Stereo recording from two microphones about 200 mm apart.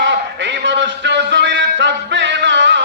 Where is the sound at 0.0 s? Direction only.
60° right (ahead or behind).